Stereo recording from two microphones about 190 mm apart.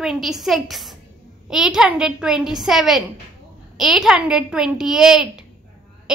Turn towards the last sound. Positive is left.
turn(degrees=-5)  # may be behind; listen again after turning